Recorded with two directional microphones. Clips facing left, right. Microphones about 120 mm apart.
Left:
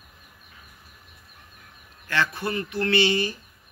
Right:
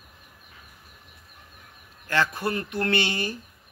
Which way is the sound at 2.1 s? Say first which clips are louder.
Right 1 dB; 45° right (ahead or behind).